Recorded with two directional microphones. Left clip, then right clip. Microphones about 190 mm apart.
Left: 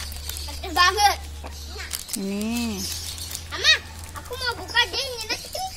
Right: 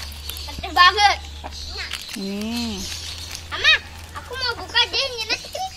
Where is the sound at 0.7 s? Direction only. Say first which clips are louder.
Right 4 dB; 25° left (ahead or behind).